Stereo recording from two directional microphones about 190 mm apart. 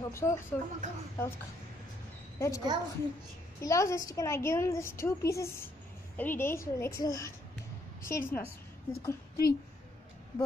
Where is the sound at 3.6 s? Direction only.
15° left (ahead or behind).